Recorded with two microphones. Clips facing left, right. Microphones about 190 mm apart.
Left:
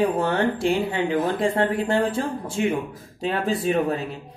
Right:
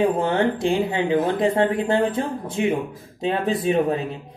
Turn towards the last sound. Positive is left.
turn(degrees=-20)  # may be behind; listen again after turning